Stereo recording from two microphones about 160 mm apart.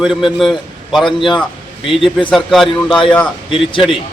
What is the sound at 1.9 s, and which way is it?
Speech, 30° left (ahead or behind).